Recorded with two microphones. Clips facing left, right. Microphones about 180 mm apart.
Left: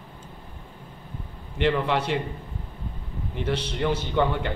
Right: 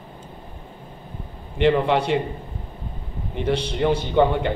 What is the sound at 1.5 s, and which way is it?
Speech, 20° right (ahead or behind).